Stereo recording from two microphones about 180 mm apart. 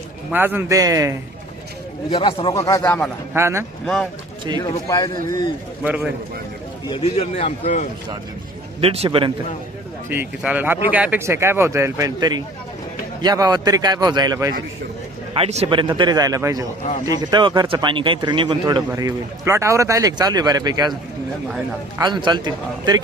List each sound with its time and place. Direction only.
0.3 s speech: 10° right (ahead or behind)
2.0 s speech: 30° left (ahead or behind); by 3.1 s 10° left (ahead or behind)
3.3 s speech: 15° right (ahead or behind)
3.8 s speech: 5° left (ahead or behind)
4.6 s speech: 25° left (ahead or behind)
5.8 s speech: 10° right (ahead or behind)
6.8 s a man's voice: 30° left (ahead or behind)
8.8 s a man's voice: 35° right (ahead or behind)
10.1 s speech: 10° right (ahead or behind)
15.3 s speech: 35° right (ahead or behind)
21.9 s speech: 25° right (ahead or behind)